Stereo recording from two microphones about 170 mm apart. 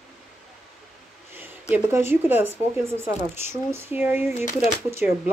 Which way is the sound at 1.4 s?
15° right (ahead or behind).